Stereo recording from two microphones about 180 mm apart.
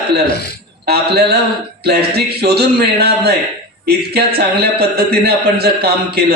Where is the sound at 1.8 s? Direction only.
60° right (ahead or behind).